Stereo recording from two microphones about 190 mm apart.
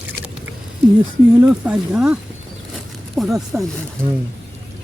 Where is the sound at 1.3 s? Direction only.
10° right (ahead or behind).